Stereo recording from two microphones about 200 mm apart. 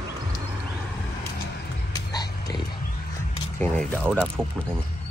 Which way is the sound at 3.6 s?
10° left (ahead or behind).